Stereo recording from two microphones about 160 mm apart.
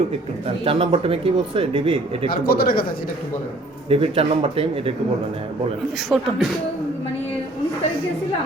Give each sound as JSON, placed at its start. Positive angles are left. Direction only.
{"t": 0.4, "sound": "speech", "side_deg": -35}
{"t": 2.3, "sound": "speech", "side_deg": 70}
{"t": 3.8, "sound": "speech", "side_deg": -35}
{"t": 6.1, "sound": "speech", "side_deg": 0}